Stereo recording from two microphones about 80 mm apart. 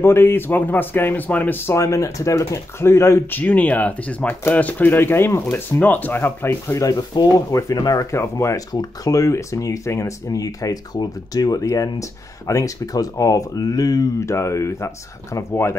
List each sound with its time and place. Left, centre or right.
0.0 s speech: left
3.3 s speech: centre; by 14.0 s left
14.2 s speech: left